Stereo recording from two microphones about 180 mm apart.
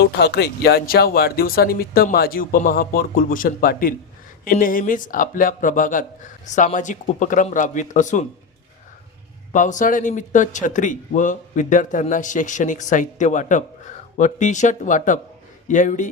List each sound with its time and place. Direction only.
0.2 s a man's voice: 65° left (ahead or behind); by 8.3 s 45° left (ahead or behind)
9.5 s a man's voice: 45° left (ahead or behind)